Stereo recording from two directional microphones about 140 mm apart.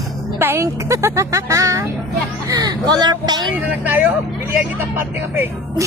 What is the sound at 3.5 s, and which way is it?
Speech, 10° right (ahead or behind).